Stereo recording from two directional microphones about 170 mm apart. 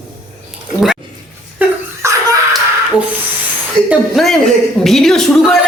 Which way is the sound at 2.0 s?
15° right (ahead or behind).